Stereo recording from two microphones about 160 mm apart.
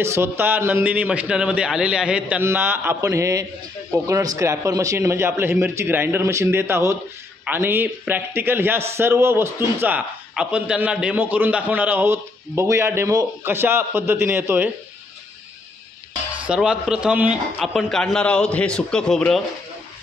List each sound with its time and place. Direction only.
0.0 s a man's voice: 15° right (ahead or behind)
16.4 s a man's voice: 5° right (ahead or behind)